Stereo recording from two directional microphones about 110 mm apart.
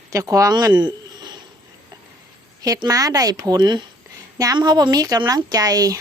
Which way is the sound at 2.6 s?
35° right (ahead or behind).